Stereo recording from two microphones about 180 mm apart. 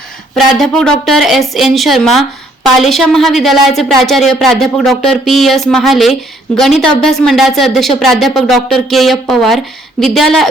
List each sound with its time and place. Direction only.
0.3 s speech: centre (ahead or behind)